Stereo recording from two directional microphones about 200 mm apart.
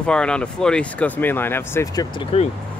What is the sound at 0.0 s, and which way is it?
Speech, 5° left (ahead or behind).